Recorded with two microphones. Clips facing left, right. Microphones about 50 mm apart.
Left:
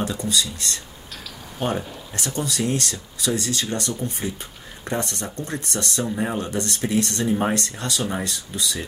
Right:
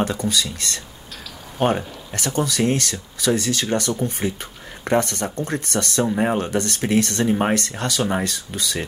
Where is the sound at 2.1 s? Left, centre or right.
Right.